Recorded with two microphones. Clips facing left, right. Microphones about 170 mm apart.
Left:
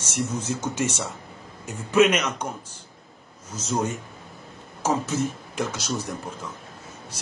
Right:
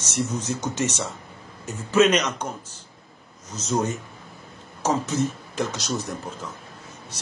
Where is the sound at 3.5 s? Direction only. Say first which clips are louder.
Right 2 dB; 10° left (ahead or behind).